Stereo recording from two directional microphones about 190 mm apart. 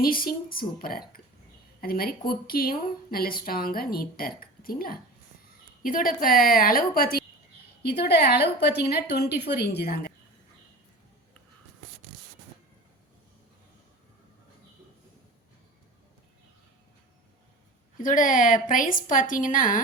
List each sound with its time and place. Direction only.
0.0 s a woman's voice: 50° left (ahead or behind)
18.0 s speech: 45° left (ahead or behind)